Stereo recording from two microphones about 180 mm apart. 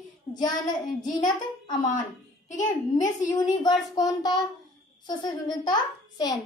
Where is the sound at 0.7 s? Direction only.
45° left (ahead or behind).